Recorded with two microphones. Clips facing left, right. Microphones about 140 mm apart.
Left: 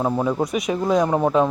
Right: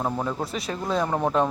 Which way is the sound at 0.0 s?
15° left (ahead or behind).